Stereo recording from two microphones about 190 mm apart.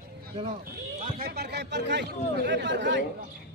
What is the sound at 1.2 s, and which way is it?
Speech, 60° right (ahead or behind).